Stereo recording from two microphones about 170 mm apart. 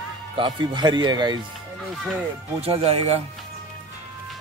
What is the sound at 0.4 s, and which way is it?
Speech, 25° right (ahead or behind).